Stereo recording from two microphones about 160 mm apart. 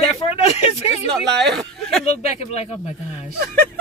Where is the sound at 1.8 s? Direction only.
Centre (ahead or behind).